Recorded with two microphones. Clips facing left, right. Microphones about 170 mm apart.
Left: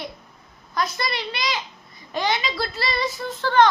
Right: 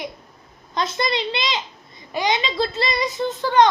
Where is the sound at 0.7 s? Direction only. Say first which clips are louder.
Right 3 dB; 25° right (ahead or behind).